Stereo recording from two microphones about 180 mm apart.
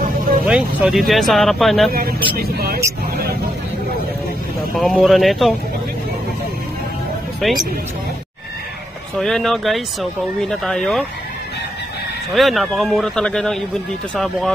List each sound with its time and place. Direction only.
0.5 s speech: 5° right (ahead or behind)
1.9 s speech: 55° right (ahead or behind)
4.7 s speech: centre (ahead or behind)
7.3 s speech: centre (ahead or behind)
9.1 s speech: centre (ahead or behind)
12.3 s speech: centre (ahead or behind)